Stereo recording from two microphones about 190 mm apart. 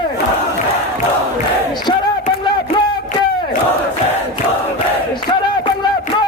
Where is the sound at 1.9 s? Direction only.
20° left (ahead or behind).